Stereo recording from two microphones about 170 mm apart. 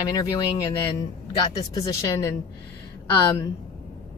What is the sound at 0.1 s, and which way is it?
Speech, 20° left (ahead or behind).